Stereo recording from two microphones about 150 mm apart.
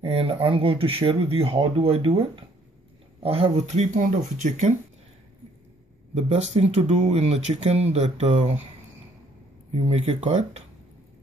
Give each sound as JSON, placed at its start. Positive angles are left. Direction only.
{"t": 0.0, "sound": "speech", "side_deg": -40}
{"t": 6.1, "sound": "speech", "side_deg": -45}
{"t": 9.8, "sound": "speech", "side_deg": -45}